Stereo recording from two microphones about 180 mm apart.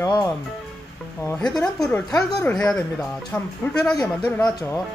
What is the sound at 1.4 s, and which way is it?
Speech, 5° left (ahead or behind).